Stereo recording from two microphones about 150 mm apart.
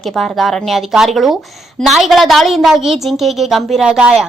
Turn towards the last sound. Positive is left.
turn(degrees=-5)  # may be behind; listen again after turning